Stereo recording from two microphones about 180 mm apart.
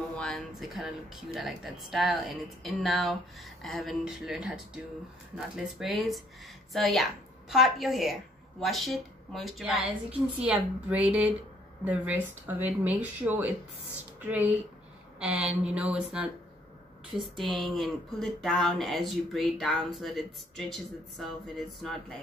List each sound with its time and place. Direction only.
0.1 s speech: centre (ahead or behind)
5.6 s a woman's voice: centre (ahead or behind)
15.1 s speech: 5° right (ahead or behind)
17.4 s speech: centre (ahead or behind)